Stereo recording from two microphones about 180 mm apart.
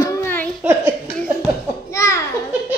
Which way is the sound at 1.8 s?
15° left (ahead or behind).